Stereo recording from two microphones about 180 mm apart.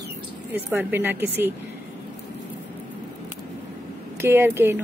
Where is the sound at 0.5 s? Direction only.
10° right (ahead or behind).